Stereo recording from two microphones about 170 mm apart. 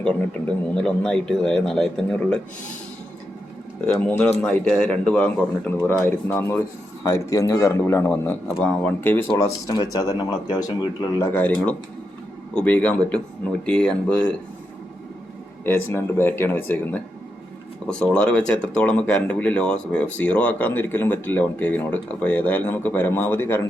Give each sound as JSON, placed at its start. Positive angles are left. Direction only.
{"t": 0.0, "sound": "a man's voice", "side_deg": 5}
{"t": 3.8, "sound": "speech", "side_deg": 10}
{"t": 9.3, "sound": "speech", "side_deg": 25}
{"t": 11.2, "sound": "speech", "side_deg": 10}
{"t": 15.6, "sound": "speech", "side_deg": 15}